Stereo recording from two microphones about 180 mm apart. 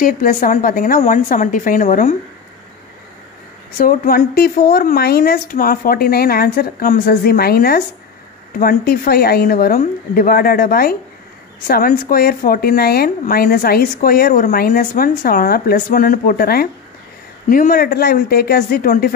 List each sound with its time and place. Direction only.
0.0 s a woman's voice: 50° left (ahead or behind)
3.7 s speech: 55° left (ahead or behind)